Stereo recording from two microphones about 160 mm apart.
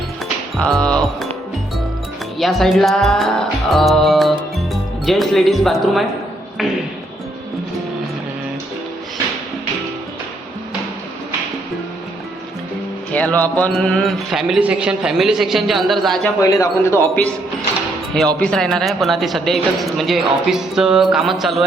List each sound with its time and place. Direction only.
0.5 s speech: 5° left (ahead or behind)
2.4 s music: centre (ahead or behind)
13.1 s speech: 10° left (ahead or behind)
16.4 s speech: 15° left (ahead or behind)
18.3 s speech: 5° left (ahead or behind)